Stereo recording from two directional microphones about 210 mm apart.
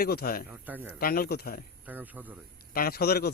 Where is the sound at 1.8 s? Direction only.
10° right (ahead or behind).